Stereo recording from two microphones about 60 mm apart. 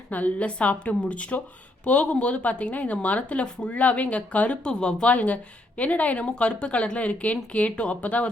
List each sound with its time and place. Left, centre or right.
0.1 s speech: left